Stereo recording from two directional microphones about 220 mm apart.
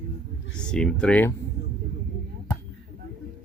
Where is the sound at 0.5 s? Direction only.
5° left (ahead or behind).